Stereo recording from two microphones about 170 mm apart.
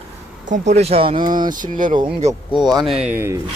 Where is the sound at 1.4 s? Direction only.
50° right (ahead or behind).